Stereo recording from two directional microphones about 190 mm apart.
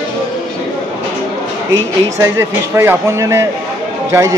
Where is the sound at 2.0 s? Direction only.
15° right (ahead or behind).